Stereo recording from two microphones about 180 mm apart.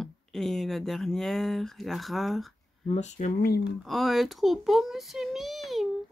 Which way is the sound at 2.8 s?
40° left (ahead or behind).